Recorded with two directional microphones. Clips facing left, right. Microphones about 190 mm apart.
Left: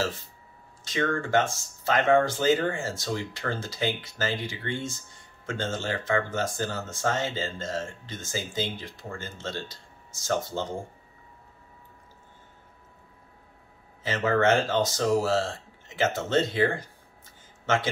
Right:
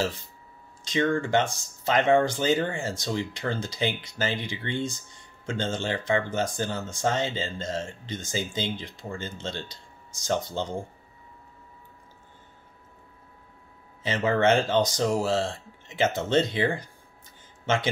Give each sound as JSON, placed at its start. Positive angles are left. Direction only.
{"t": 0.8, "sound": "speech", "side_deg": -20}
{"t": 14.0, "sound": "speech", "side_deg": -20}